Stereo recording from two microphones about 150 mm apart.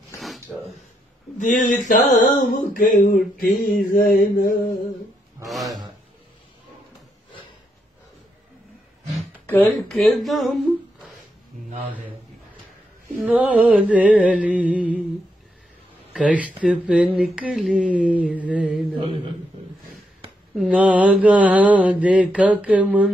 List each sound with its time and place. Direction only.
0.2 s a sound: centre (ahead or behind)
1.4 s mantra: 60° left (ahead or behind)
2.4 s a sound: 60° left (ahead or behind)
5.5 s a man's voice: centre (ahead or behind)
9.5 s speech: 10° left (ahead or behind)
13.3 s speech: 10° right (ahead or behind)
16.1 s speech: 10° right (ahead or behind)
20.5 s speech: 5° right (ahead or behind)